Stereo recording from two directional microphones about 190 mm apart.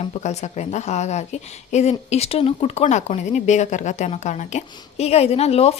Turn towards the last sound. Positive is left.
turn(degrees=35)  # may be behind; listen again after turning